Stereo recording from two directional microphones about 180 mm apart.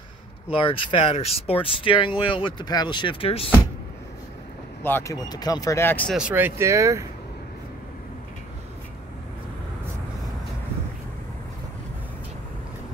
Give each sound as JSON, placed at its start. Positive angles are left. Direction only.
{"t": 0.6, "sound": "speech", "side_deg": 30}
{"t": 4.8, "sound": "speech", "side_deg": 15}
{"t": 6.1, "sound": "speech", "side_deg": -10}